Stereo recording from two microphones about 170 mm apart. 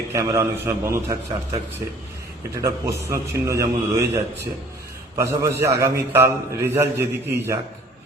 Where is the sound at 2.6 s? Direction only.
15° right (ahead or behind).